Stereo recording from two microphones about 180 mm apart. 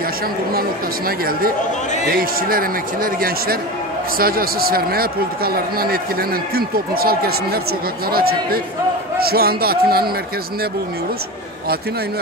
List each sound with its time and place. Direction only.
0.6 s speech: 55° right (ahead or behind)